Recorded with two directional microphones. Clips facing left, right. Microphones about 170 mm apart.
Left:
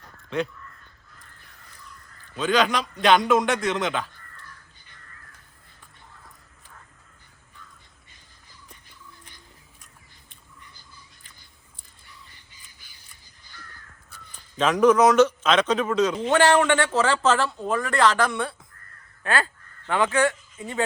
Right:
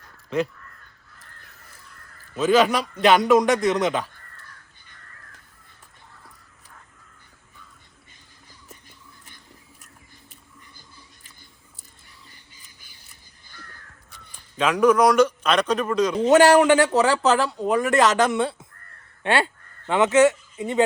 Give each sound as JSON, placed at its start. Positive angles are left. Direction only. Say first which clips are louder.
{"t": 0.3, "sound": "a man's voice", "louder": "right 3 dB", "side_deg": 0}
{"t": 2.3, "sound": "a man's voice", "louder": "right 4 dB", "side_deg": -5}
{"t": 14.6, "sound": "speech", "louder": "even", "side_deg": -10}
{"t": 16.2, "sound": "a man's voice", "louder": "right 7 dB", "side_deg": -40}
{"t": 16.6, "sound": "a man's voice", "louder": "right 5 dB", "side_deg": -5}
{"t": 17.3, "sound": "speech", "louder": "right 3 dB", "side_deg": -15}